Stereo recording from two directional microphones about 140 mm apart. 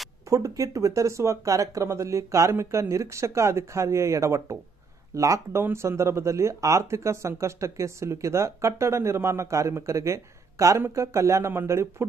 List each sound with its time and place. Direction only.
0.3 s speech: 25° right (ahead or behind)